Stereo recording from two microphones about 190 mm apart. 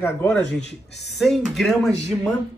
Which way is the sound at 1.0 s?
Centre (ahead or behind).